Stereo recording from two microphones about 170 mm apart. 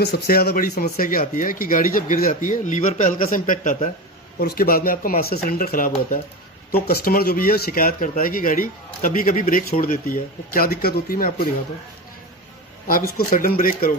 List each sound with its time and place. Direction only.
0.0 s speech: 65° left (ahead or behind)
12.8 s speech: 55° left (ahead or behind)